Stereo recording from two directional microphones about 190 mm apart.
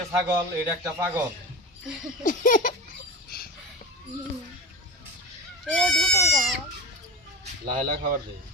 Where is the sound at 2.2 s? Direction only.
45° left (ahead or behind).